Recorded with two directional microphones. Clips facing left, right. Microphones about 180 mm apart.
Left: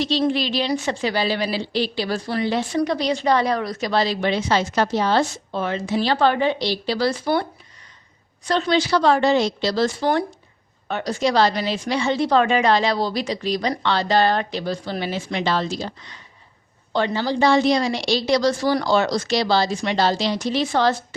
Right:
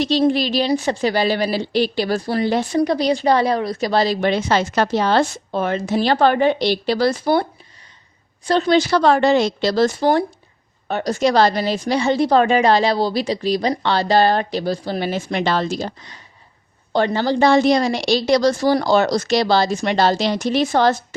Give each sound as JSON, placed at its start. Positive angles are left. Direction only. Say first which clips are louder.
{"t": 0.0, "sound": "a woman's voice", "louder": "right 4 dB", "side_deg": -45}
{"t": 5.5, "sound": "a woman's voice", "louder": "right 3 dB", "side_deg": -50}
{"t": 8.4, "sound": "a woman's voice", "louder": "right 4 dB", "side_deg": -35}